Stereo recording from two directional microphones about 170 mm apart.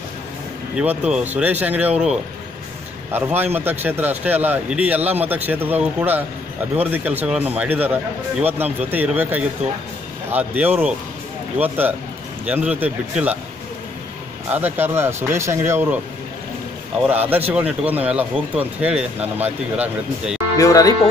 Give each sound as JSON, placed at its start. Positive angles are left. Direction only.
{"t": 0.7, "sound": "speech", "side_deg": -5}
{"t": 14.5, "sound": "speech", "side_deg": -10}
{"t": 17.1, "sound": "speech", "side_deg": -10}
{"t": 20.5, "sound": "speech", "side_deg": 20}